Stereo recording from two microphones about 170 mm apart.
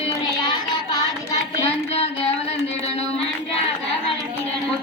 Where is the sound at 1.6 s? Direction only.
35° left (ahead or behind).